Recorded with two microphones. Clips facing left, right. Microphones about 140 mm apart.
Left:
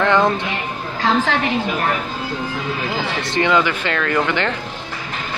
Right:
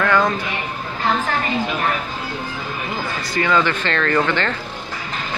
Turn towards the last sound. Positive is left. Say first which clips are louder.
# even
turn(degrees=10)  # may be behind; listen again after turning